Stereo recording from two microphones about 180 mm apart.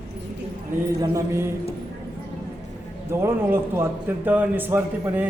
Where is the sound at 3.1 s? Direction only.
15° right (ahead or behind).